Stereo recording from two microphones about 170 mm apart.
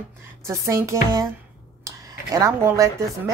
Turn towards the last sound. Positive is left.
turn(degrees=-15)  # may be behind; listen again after turning